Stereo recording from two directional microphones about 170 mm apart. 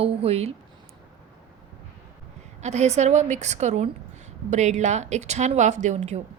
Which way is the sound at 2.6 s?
40° right (ahead or behind).